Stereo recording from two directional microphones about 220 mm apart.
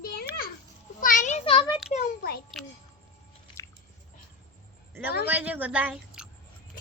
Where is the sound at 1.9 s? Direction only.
40° left (ahead or behind).